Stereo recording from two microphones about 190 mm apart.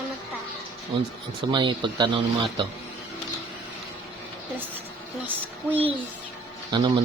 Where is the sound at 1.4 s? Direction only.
25° right (ahead or behind).